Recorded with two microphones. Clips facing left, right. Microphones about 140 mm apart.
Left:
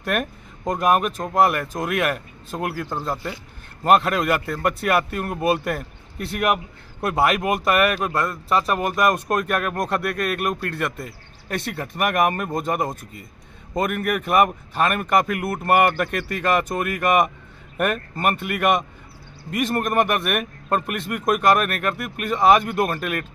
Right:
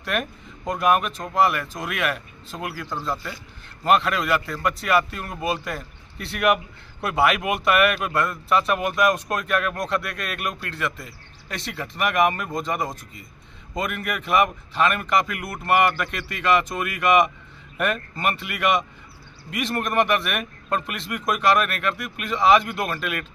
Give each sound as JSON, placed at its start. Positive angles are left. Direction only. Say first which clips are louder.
{"t": 0.0, "sound": "speech", "louder": "left 3 dB", "side_deg": 50}